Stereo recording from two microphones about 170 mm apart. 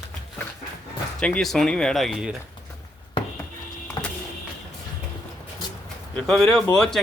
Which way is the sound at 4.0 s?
25° left (ahead or behind).